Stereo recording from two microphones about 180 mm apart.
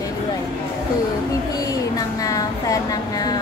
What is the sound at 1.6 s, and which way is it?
Speech, 20° left (ahead or behind).